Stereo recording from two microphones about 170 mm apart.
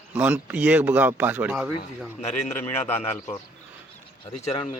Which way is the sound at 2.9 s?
40° left (ahead or behind).